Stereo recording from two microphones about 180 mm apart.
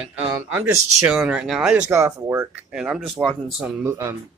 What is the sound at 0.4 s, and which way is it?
Speech, 10° right (ahead or behind).